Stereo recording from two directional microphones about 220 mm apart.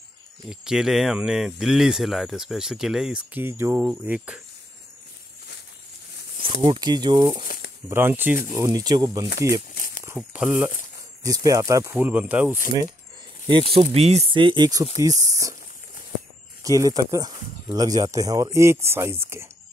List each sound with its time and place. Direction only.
0.5 s speech: centre (ahead or behind)
6.6 s speech: 20° right (ahead or behind)
7.9 s speech: 10° right (ahead or behind)
9.8 s a sound: 40° left (ahead or behind)
10.0 s speech: 5° right (ahead or behind)
11.2 s speech: 15° right (ahead or behind)
13.5 s speech: 25° right (ahead or behind)
16.6 s speech: 15° right (ahead or behind)